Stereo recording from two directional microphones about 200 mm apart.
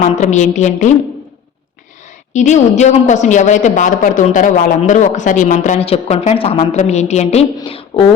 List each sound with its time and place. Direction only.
0.0 s a woman's voice: 35° left (ahead or behind)
2.3 s a woman's voice: 35° left (ahead or behind)